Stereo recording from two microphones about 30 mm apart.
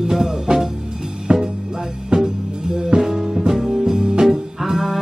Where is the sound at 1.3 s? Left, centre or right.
Right.